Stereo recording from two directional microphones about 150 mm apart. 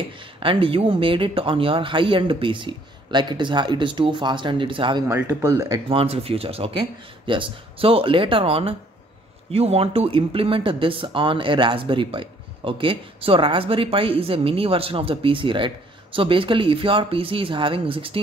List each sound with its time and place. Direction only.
0.2 s speech: 35° right (ahead or behind)
5.0 s speech: 15° right (ahead or behind)
5.9 s speech: 40° right (ahead or behind)